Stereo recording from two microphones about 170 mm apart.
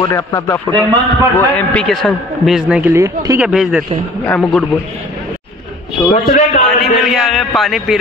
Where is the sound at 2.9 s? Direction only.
15° right (ahead or behind).